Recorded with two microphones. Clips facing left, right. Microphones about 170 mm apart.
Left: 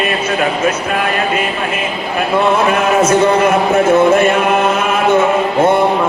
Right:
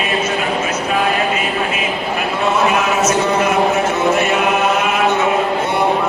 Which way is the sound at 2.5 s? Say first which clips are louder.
Left 3 dB; 55° left (ahead or behind).